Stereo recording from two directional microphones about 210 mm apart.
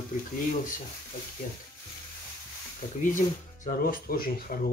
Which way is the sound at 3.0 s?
40° left (ahead or behind).